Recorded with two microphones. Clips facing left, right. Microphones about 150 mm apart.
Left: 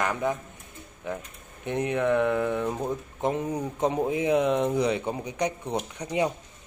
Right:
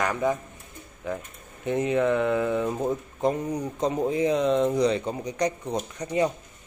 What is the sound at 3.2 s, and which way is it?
Speech, 20° left (ahead or behind).